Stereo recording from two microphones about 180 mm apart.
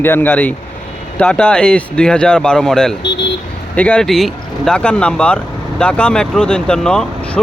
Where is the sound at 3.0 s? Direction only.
75° left (ahead or behind).